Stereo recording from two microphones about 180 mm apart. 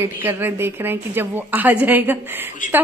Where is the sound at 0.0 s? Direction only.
10° right (ahead or behind).